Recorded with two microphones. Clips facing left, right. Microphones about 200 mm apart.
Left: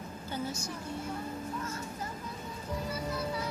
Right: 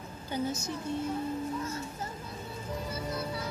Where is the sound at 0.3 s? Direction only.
20° right (ahead or behind).